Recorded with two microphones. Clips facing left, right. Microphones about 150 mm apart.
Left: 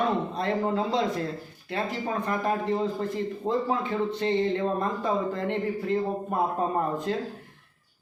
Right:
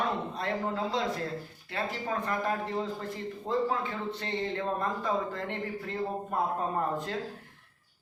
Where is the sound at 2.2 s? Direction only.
20° left (ahead or behind).